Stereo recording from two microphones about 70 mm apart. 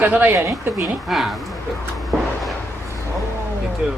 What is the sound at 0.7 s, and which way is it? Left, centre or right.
Speech, centre.